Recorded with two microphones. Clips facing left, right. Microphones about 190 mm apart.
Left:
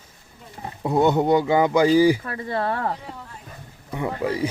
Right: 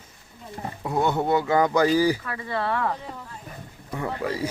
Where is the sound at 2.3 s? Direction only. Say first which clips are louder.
Left 2 dB; 40° left (ahead or behind).